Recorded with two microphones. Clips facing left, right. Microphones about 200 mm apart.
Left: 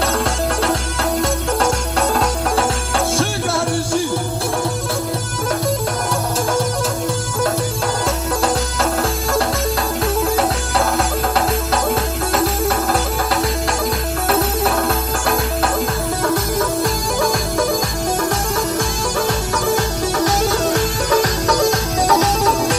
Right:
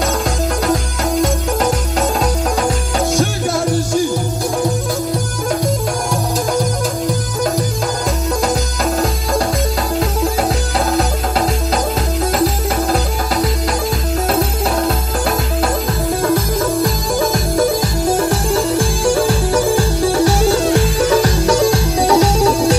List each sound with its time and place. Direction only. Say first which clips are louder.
18.1 s music: right 4 dB; 30° right (ahead or behind)